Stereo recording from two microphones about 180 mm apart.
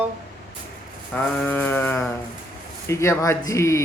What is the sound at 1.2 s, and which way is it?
Speech, 10° left (ahead or behind).